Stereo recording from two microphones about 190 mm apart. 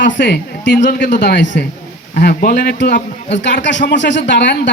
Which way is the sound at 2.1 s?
50° left (ahead or behind).